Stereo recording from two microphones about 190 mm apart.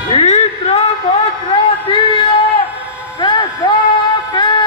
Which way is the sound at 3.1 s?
20° left (ahead or behind).